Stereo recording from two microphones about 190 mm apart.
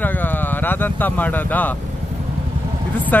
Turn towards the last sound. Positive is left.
turn(degrees=10)  # may be behind; listen again after turning